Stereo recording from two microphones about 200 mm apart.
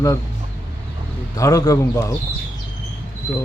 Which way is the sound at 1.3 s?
15° left (ahead or behind).